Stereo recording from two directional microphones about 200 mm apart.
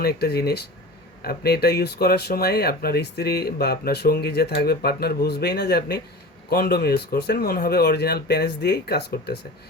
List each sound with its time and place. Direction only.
0.0 s speech: 50° left (ahead or behind)